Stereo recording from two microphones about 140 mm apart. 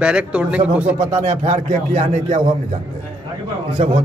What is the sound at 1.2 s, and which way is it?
Speech, 55° right (ahead or behind).